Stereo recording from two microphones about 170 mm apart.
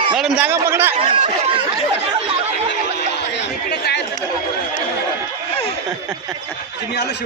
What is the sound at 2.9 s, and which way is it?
Chatter, 85° left.